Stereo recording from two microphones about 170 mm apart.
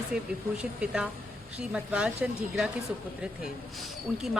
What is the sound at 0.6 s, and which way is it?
Speech, 5° right (ahead or behind).